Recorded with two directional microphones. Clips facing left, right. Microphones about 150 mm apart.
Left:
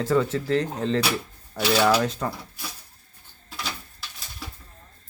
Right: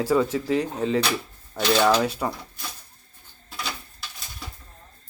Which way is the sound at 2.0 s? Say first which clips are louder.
Right 1 dB; 10° right (ahead or behind).